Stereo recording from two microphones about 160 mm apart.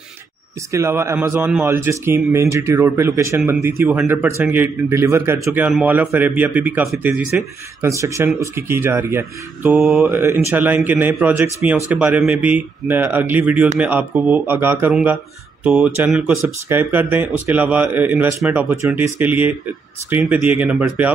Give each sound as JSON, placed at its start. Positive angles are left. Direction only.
{"t": 0.7, "sound": "speech", "side_deg": -15}